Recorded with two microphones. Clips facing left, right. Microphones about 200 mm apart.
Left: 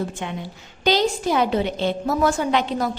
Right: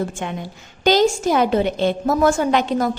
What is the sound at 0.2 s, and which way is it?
A woman's voice, 50° right (ahead or behind).